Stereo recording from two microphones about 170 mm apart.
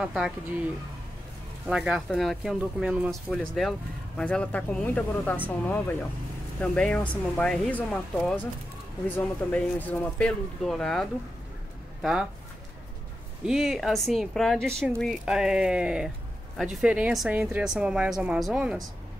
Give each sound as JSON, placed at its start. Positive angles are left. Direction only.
{"t": 0.0, "sound": "speech", "side_deg": -5}
{"t": 1.7, "sound": "speech", "side_deg": -5}
{"t": 6.6, "sound": "speech", "side_deg": 5}
{"t": 13.5, "sound": "a woman's voice", "side_deg": 0}